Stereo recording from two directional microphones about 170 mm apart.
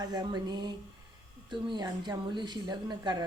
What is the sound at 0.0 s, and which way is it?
A woman's voice, 25° right (ahead or behind).